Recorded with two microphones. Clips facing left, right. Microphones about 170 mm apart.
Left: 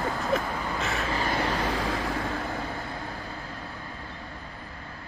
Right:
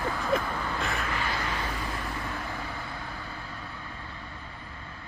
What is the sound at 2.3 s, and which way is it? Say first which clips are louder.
Vehicle: left 4 dB; 45° left (ahead or behind).